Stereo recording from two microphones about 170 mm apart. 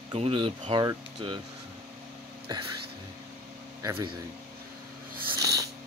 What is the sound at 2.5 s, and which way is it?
Speech, 25° right (ahead or behind).